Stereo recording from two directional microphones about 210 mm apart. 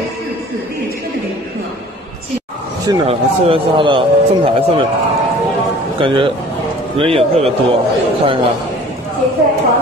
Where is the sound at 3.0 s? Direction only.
25° right (ahead or behind).